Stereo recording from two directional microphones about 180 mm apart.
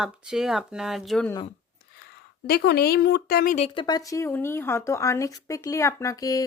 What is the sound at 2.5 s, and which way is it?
A woman's voice, 60° left (ahead or behind).